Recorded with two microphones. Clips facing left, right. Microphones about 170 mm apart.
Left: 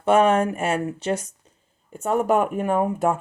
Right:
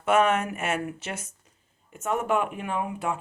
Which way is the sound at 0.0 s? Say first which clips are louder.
Left 5 dB; 30° left (ahead or behind).